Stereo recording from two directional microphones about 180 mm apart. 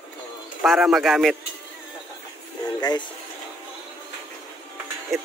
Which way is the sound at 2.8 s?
20° left (ahead or behind).